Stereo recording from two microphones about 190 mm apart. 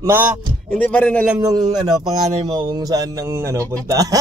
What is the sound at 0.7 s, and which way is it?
Speech, 5° left (ahead or behind).